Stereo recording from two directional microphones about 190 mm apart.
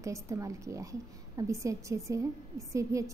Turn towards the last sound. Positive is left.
turn(degrees=-15)  # may be behind; listen again after turning